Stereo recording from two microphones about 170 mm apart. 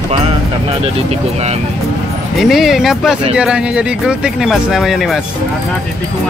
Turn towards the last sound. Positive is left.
turn(degrees=0)  # may be behind; listen again after turning